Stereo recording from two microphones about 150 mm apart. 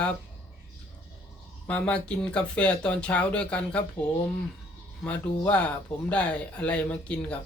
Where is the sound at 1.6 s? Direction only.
10° left (ahead or behind).